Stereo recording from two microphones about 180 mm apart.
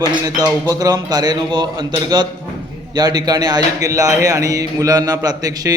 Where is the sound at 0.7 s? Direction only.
20° right (ahead or behind).